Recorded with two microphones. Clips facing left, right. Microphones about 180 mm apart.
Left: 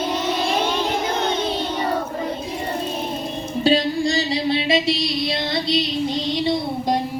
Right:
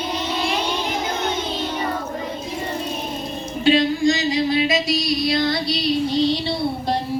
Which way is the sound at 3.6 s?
35° left (ahead or behind).